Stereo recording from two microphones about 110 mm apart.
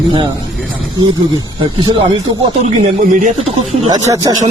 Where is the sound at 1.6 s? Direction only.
50° right (ahead or behind).